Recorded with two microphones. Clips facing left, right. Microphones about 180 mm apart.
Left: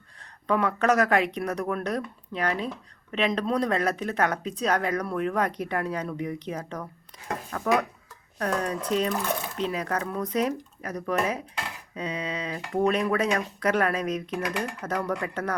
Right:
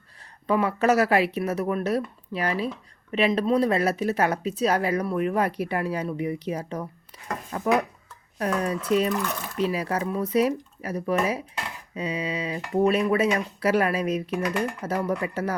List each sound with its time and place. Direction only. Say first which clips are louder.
0.2 s speech: right 2 dB; 5° right (ahead or behind)